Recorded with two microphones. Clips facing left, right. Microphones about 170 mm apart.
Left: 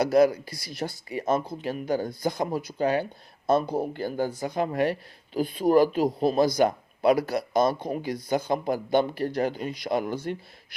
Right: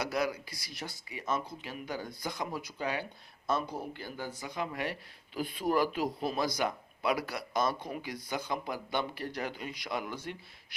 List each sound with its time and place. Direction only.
0.0 s speech: 40° left (ahead or behind)